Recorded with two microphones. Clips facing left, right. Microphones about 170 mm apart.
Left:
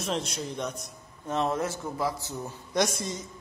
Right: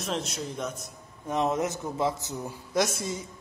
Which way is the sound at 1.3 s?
15° right (ahead or behind).